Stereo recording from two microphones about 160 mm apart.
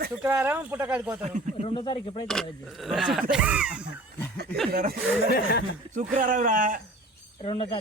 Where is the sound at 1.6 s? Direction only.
30° left (ahead or behind).